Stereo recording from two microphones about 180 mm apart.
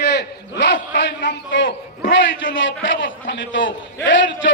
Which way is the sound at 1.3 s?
80° left.